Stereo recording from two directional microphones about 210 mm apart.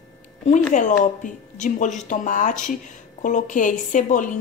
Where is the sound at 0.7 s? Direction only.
35° left (ahead or behind).